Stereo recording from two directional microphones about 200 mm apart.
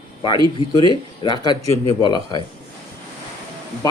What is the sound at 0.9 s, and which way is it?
Speech, 20° left (ahead or behind).